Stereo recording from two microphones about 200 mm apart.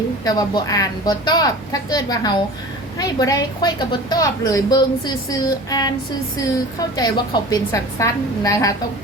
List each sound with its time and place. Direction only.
0.3 s a woman's voice: 20° left (ahead or behind)